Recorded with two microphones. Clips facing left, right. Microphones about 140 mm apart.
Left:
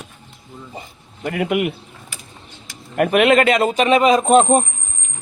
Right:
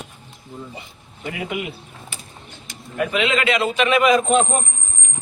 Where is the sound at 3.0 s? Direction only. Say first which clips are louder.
Left 7 dB; 60° left (ahead or behind); by 4.3 s 35° left (ahead or behind).